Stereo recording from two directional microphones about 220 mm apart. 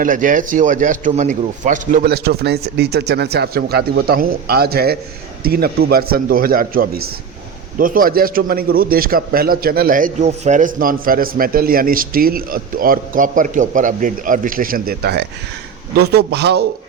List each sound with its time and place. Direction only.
0.0 s a man's voice: 35° right (ahead or behind)